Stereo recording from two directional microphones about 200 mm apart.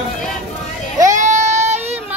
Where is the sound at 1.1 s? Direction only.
35° right (ahead or behind).